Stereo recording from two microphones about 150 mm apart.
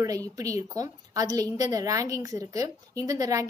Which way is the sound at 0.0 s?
25° right (ahead or behind).